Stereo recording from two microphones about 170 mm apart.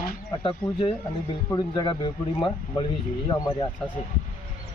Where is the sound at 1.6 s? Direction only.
25° left (ahead or behind).